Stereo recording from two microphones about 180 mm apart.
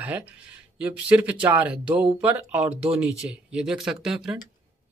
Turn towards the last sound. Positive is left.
turn(degrees=-5)  # may be behind; listen again after turning